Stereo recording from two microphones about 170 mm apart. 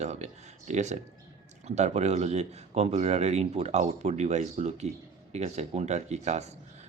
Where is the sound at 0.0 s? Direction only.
40° right (ahead or behind).